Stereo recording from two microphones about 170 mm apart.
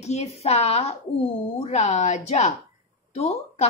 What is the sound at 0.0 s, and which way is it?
Speech, 40° left (ahead or behind).